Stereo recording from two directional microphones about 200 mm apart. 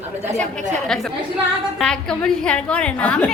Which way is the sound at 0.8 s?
Centre (ahead or behind).